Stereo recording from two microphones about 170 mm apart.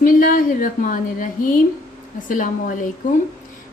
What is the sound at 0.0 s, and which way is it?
A woman's voice, 55° left (ahead or behind).